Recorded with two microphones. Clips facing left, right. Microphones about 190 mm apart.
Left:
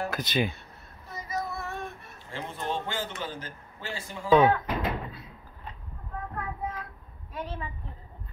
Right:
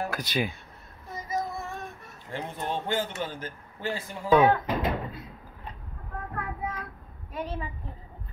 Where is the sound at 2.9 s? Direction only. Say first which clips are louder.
Right 4 dB; 50° right (ahead or behind).